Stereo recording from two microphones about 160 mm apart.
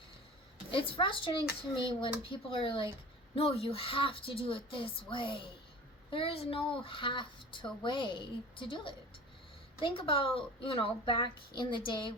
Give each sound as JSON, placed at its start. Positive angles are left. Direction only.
{"t": 0.7, "sound": "speech", "side_deg": 30}